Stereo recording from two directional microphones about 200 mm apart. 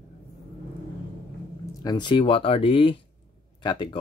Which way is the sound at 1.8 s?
20° left (ahead or behind).